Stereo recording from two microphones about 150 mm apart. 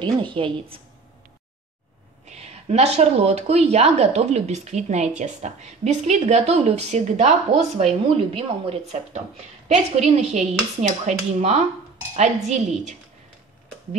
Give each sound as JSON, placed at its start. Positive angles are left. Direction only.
{"t": 0.0, "sound": "a woman's voice", "side_deg": -35}
{"t": 2.2, "sound": "speech", "side_deg": -45}